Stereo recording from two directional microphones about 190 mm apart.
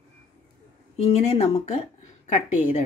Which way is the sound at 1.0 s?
35° left (ahead or behind).